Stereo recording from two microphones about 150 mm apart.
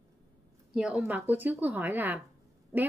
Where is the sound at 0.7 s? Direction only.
5° right (ahead or behind).